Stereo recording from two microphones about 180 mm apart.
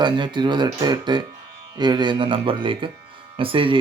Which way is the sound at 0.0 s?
25° right (ahead or behind).